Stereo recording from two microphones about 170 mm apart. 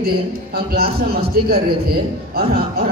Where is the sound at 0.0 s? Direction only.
65° right (ahead or behind).